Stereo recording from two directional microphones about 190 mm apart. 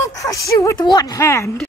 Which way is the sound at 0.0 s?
15° left (ahead or behind).